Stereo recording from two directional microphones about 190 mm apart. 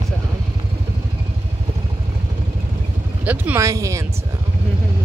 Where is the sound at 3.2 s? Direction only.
10° right (ahead or behind).